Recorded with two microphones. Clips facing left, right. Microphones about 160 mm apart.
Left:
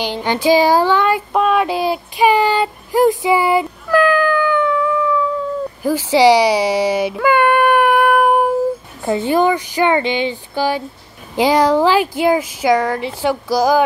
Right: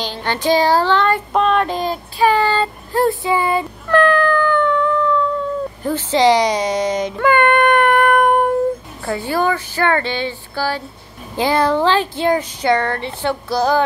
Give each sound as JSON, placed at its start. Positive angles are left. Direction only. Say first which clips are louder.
{"t": 0.0, "sound": "child singing", "louder": "left 4 dB", "side_deg": 15}
{"t": 5.8, "sound": "speech", "louder": "left 4 dB", "side_deg": 10}
{"t": 9.0, "sound": "speech", "louder": "left 4 dB", "side_deg": 20}